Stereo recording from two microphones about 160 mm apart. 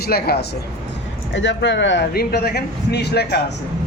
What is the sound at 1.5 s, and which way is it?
A man's voice, 90° left.